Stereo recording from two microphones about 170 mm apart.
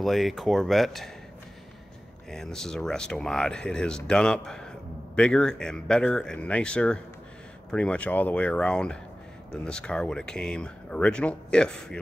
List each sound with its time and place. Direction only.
0.0 s speech: centre (ahead or behind)
2.3 s speech: 5° left (ahead or behind)